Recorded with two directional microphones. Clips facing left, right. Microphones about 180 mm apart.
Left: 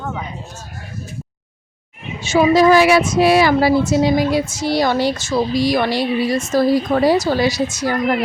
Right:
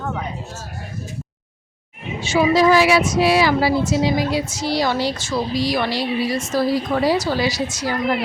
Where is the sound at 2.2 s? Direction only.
45° left (ahead or behind).